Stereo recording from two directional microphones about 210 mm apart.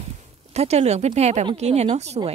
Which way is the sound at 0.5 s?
30° right (ahead or behind).